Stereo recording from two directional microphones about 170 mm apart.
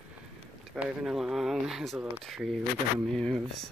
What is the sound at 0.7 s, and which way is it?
Speech, 5° right (ahead or behind).